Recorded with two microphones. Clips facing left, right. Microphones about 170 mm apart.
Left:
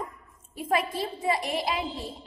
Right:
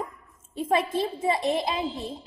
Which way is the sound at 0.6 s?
25° right (ahead or behind).